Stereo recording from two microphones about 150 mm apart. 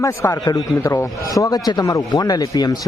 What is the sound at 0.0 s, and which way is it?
Speech, 20° left (ahead or behind).